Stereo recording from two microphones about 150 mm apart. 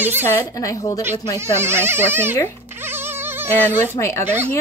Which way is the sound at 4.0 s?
20° left (ahead or behind).